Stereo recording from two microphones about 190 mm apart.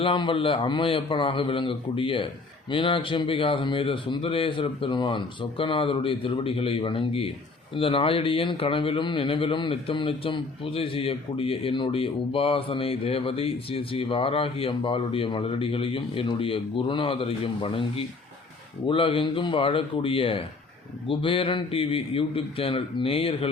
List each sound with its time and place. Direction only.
0.0 s a man's voice: 25° left (ahead or behind)
18.9 s a man's voice: 30° left (ahead or behind)